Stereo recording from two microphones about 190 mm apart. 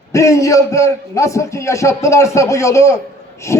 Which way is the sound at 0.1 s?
15° left (ahead or behind).